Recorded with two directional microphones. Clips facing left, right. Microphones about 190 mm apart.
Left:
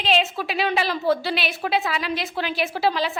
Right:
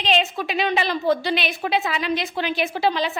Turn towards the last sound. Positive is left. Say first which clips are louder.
# right 1 dB
turn(degrees=5)  # may be behind; listen again after turning